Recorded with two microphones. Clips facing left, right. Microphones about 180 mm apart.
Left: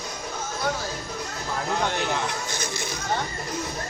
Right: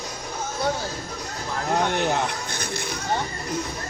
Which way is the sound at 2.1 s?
55° right (ahead or behind).